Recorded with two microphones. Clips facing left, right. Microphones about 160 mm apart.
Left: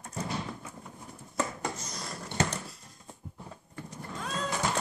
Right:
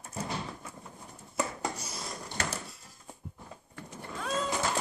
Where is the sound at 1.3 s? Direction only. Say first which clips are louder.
Even; 10° right (ahead or behind).